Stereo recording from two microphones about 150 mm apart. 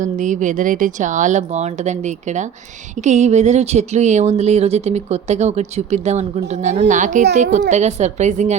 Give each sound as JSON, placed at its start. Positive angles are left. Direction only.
{"t": 0.0, "sound": "speech", "side_deg": -55}